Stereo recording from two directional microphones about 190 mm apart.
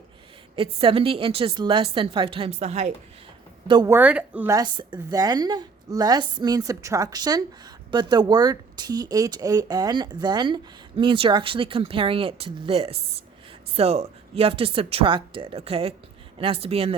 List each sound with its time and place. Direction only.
0.5 s speech: 30° right (ahead or behind)
3.7 s speech: 25° right (ahead or behind)
3.9 s speech: 10° right (ahead or behind); by 16.9 s 30° right (ahead or behind)